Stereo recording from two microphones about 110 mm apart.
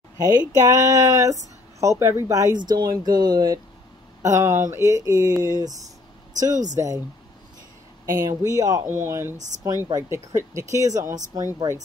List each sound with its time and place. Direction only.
0.2 s speech: 35° right (ahead or behind)
8.0 s speech: 30° right (ahead or behind)